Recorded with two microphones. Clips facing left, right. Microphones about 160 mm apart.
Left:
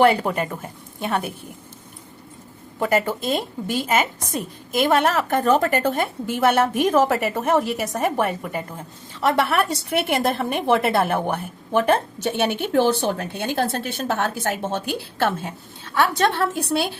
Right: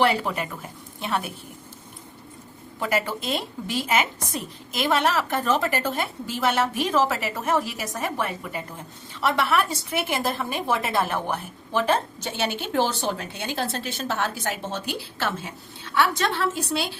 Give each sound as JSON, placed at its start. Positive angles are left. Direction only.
{"t": 0.0, "sound": "a woman's voice", "side_deg": 45}
{"t": 2.9, "sound": "a woman's voice", "side_deg": 45}